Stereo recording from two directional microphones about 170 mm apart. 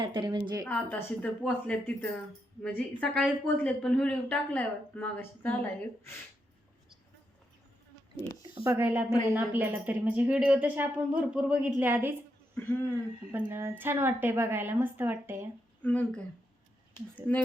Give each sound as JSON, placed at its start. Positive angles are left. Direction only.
{"t": 0.0, "sound": "a woman's voice", "side_deg": -25}
{"t": 0.6, "sound": "a woman's voice", "side_deg": 10}
{"t": 8.2, "sound": "speech", "side_deg": -15}
{"t": 13.3, "sound": "speech", "side_deg": -15}
{"t": 15.8, "sound": "a woman's voice", "side_deg": 10}